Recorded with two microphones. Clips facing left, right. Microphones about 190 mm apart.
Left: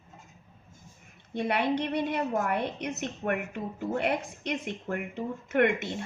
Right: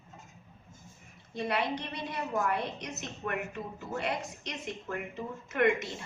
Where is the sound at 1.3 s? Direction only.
60° left (ahead or behind).